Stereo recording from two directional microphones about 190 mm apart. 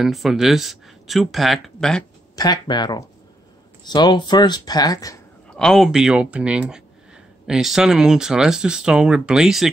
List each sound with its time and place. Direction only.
0.0 s speech: centre (ahead or behind)
2.3 s speech: 20° left (ahead or behind)
5.5 s speech: 5° left (ahead or behind)